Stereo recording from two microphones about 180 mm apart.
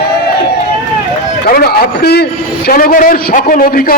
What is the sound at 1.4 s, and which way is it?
A man's voice, 60° left (ahead or behind).